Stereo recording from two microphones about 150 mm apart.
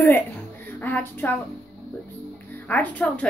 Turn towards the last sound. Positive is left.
turn(degrees=10)  # may be behind; listen again after turning